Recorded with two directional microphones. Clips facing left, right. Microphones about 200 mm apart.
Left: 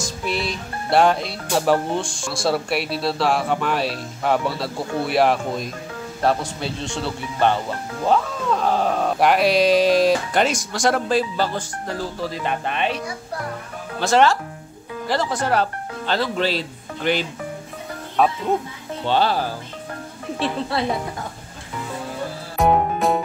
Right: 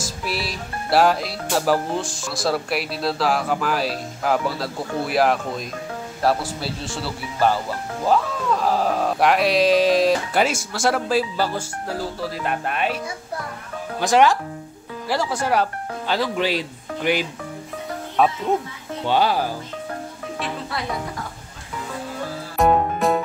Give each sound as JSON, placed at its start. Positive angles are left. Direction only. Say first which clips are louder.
{"t": 0.0, "sound": "speech", "louder": "left 2 dB", "side_deg": -5}
{"t": 18.2, "sound": "speech", "louder": "even", "side_deg": 0}
{"t": 19.0, "sound": "speech", "louder": "even", "side_deg": -10}
{"t": 20.3, "sound": "speech", "louder": "left 6 dB", "side_deg": 30}
{"t": 22.6, "sound": "music", "louder": "even", "side_deg": 0}